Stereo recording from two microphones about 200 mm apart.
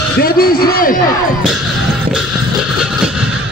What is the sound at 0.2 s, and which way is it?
Speech, 50° left (ahead or behind).